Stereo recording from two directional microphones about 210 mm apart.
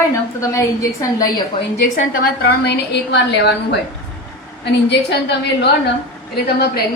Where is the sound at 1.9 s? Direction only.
45° left (ahead or behind).